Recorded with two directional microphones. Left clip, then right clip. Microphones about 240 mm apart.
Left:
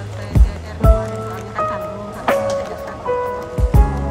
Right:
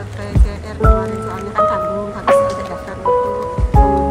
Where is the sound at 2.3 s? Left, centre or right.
Centre.